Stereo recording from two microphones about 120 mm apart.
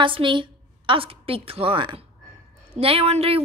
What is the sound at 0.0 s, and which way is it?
A woman's voice, 45° right (ahead or behind).